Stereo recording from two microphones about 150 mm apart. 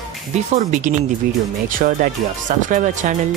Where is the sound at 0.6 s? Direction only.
55° right (ahead or behind).